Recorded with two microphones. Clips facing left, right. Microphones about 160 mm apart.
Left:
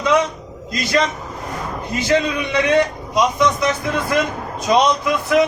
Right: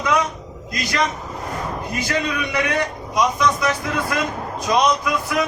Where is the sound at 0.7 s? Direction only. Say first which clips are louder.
Left 3 dB; 25° left (ahead or behind).